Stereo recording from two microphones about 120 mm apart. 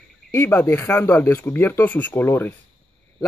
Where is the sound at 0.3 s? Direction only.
20° left (ahead or behind).